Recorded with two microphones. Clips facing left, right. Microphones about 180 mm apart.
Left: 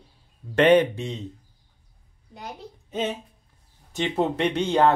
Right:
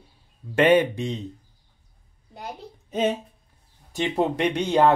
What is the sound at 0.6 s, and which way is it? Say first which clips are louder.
Speech: left 1 dB; 10° right (ahead or behind).